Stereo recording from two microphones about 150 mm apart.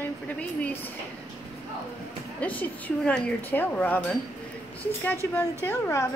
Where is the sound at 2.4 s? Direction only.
10° left (ahead or behind).